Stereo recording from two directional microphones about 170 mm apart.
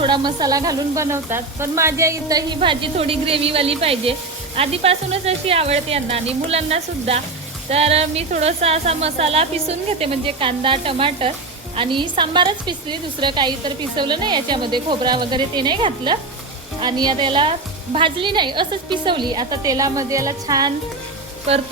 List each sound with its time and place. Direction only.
0.0 s a woman's voice: 25° right (ahead or behind)
2.6 s a woman's voice: 35° right (ahead or behind)